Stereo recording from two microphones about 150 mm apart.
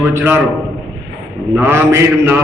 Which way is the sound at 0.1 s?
15° right (ahead or behind).